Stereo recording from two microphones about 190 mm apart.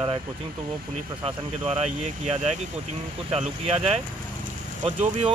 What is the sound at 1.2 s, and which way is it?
Speech, 30° right (ahead or behind).